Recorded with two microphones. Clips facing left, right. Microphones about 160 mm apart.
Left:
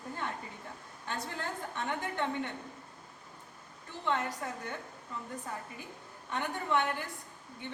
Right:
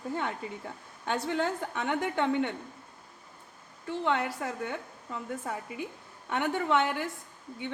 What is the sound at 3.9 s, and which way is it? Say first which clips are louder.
Speech: right 5 dB; 85° right.